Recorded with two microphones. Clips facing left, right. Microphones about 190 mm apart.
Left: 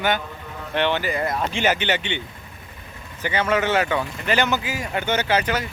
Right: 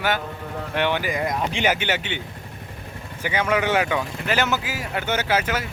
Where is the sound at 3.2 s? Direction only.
10° right (ahead or behind).